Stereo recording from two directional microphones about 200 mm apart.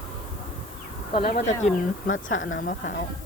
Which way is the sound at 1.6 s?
35° left (ahead or behind).